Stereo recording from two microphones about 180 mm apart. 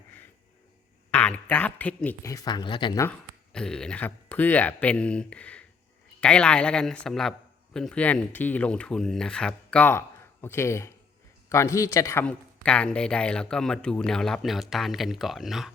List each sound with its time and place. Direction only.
1.1 s speech: 5° left (ahead or behind); by 3.0 s 25° left (ahead or behind)
3.5 s a man's voice: 5° left (ahead or behind)
12.2 s a man's voice: 5° left (ahead or behind)